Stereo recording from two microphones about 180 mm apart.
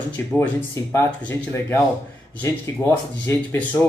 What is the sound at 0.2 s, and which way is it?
Speech, 10° left (ahead or behind).